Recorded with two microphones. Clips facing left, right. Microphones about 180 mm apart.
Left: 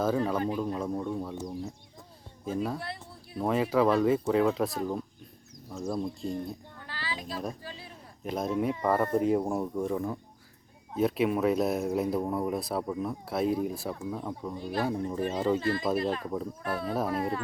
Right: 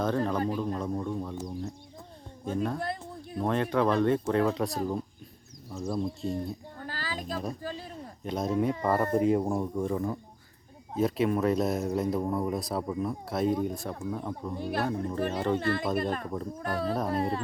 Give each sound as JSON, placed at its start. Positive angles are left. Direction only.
{"t": 0.0, "sound": "speech", "side_deg": 5}
{"t": 6.7, "sound": "a sound", "side_deg": -45}
{"t": 8.2, "sound": "speech", "side_deg": 5}
{"t": 15.5, "sound": "speech", "side_deg": -60}
{"t": 16.2, "sound": "speech", "side_deg": 5}